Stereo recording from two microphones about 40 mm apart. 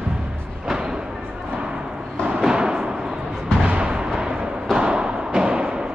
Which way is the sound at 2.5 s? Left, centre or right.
Centre.